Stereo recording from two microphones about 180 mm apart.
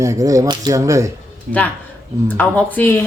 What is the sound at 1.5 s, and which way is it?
Speech, 50° right (ahead or behind).